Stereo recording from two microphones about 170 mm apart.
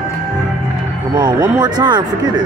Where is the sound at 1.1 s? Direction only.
25° right (ahead or behind).